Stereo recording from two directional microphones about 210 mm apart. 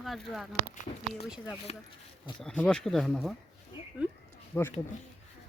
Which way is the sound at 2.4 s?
5° left (ahead or behind).